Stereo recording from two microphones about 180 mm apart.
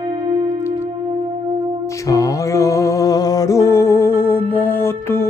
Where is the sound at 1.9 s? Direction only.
20° left (ahead or behind).